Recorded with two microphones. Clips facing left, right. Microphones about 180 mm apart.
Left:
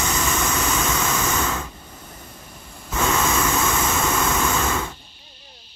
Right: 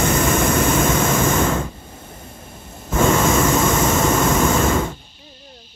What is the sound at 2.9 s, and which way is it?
Vehicle, 50° right (ahead or behind).